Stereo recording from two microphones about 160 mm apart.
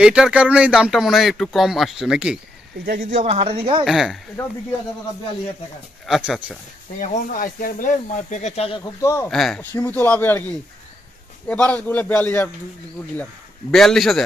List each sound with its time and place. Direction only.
0.0 s speech: 5° right (ahead or behind)
2.8 s speech: 65° right (ahead or behind)
3.3 s speech: 40° right (ahead or behind)
3.8 s speech: centre (ahead or behind)
6.0 s speech: centre (ahead or behind)
7.0 s speech: 55° left (ahead or behind); by 8.9 s 35° left (ahead or behind)
9.0 s speech: 20° left (ahead or behind)
9.3 s a man's voice: centre (ahead or behind)